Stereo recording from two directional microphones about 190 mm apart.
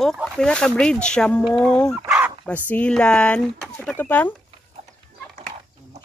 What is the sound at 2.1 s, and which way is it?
Bow-wow, 10° right (ahead or behind).